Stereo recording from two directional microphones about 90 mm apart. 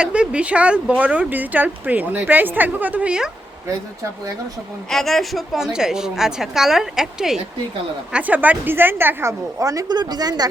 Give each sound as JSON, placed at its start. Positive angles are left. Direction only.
{"t": 0.0, "sound": "speech", "side_deg": -10}
{"t": 4.9, "sound": "a woman's voice", "side_deg": 5}
{"t": 8.1, "sound": "a woman's voice", "side_deg": -15}